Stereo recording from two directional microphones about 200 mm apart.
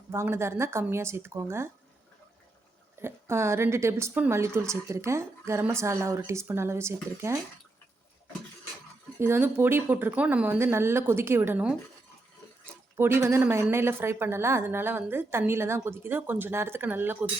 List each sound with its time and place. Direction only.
0.1 s a woman's voice: 15° right (ahead or behind)
3.0 s a woman's voice: 15° right (ahead or behind)
9.1 s a woman's voice: 10° right (ahead or behind)
13.0 s a woman's voice: 10° right (ahead or behind)